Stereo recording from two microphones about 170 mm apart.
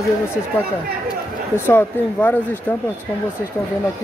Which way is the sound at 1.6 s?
10° left (ahead or behind).